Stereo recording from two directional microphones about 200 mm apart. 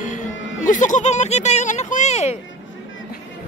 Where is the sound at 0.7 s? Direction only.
40° left (ahead or behind).